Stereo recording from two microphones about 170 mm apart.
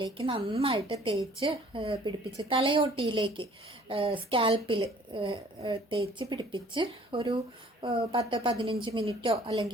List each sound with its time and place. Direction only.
0.0 s a woman's voice: 30° right (ahead or behind)
9.5 s a woman's voice: 20° right (ahead or behind)